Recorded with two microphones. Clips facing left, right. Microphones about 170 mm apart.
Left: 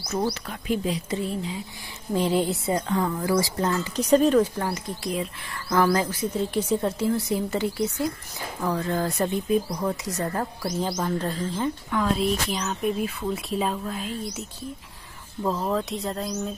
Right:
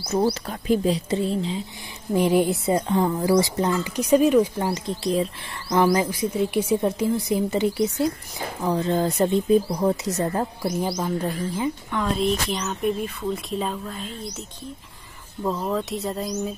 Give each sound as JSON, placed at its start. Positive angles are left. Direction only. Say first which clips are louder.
{"t": 0.0, "sound": "speech", "louder": "right 5 dB", "side_deg": -30}
{"t": 2.1, "sound": "speech", "louder": "right 4 dB", "side_deg": -15}
{"t": 2.7, "sound": "speech", "louder": "right 3 dB", "side_deg": -25}
{"t": 5.7, "sound": "speech", "louder": "right 2 dB", "side_deg": -15}
{"t": 11.9, "sound": "speech", "louder": "even", "side_deg": 0}
{"t": 15.4, "sound": "speech", "louder": "even", "side_deg": 0}